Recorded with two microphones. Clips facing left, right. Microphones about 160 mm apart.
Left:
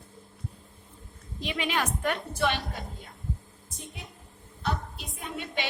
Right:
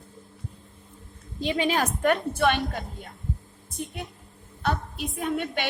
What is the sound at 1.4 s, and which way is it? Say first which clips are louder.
A woman's voice: right 5 dB; 30° right (ahead or behind).